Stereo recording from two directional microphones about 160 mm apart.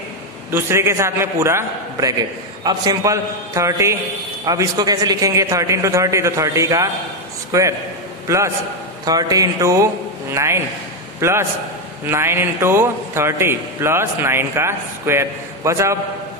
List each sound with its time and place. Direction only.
0.5 s a man's voice: 15° right (ahead or behind)